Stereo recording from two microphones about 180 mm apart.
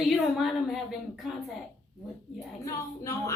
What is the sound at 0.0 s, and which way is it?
A woman's voice, centre (ahead or behind).